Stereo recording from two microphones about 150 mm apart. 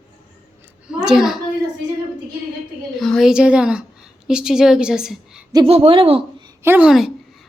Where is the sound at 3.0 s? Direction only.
Centre (ahead or behind).